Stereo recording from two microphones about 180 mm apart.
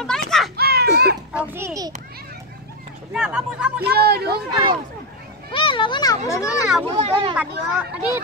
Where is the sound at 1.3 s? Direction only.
10° right (ahead or behind).